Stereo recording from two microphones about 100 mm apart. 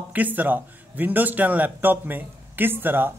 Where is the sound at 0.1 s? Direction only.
15° right (ahead or behind).